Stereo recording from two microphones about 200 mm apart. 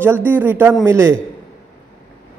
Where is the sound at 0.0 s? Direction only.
10° right (ahead or behind).